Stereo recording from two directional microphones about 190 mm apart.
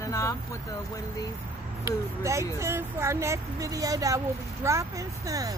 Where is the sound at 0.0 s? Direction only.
15° left (ahead or behind).